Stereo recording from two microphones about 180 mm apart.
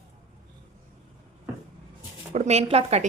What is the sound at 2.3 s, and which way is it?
Speech, 40° right (ahead or behind).